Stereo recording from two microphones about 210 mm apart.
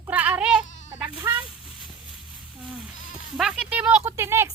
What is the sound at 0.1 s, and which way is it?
Bleat, 5° right (ahead or behind).